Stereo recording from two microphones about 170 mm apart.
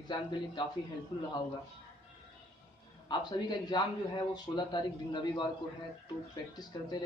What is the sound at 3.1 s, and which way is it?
A man's voice, 25° left (ahead or behind).